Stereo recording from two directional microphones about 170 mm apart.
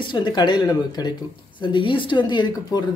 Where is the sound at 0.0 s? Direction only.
25° left (ahead or behind).